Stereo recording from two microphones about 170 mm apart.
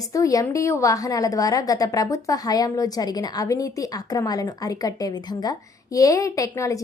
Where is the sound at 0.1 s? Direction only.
20° left (ahead or behind).